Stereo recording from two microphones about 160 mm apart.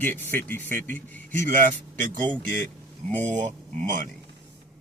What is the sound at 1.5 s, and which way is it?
Speech, 55° right (ahead or behind).